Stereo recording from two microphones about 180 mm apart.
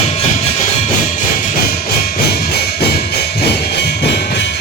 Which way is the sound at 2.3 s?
60° left (ahead or behind).